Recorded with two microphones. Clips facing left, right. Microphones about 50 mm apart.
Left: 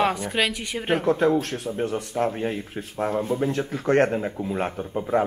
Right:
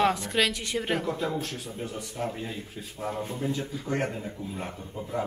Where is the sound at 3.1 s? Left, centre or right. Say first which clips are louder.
Left 8 dB; left.